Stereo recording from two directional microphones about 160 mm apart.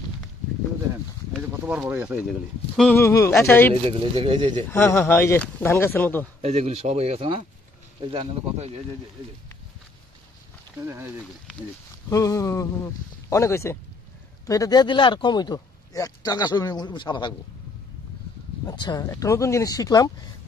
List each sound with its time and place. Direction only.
1.3 s speech: 5° right (ahead or behind)
2.2 s speech: centre (ahead or behind)
3.0 s speech: 15° left (ahead or behind)
3.8 s speech: 35° right (ahead or behind)
4.6 s speech: 15° left (ahead or behind)
6.4 s speech: 40° right (ahead or behind)
10.9 s speech: 15° right (ahead or behind)
12.1 s speech: 20° left (ahead or behind)
18.7 s speech: 25° left (ahead or behind)